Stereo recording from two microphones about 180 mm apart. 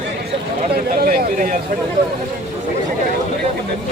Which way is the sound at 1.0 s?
50° right (ahead or behind).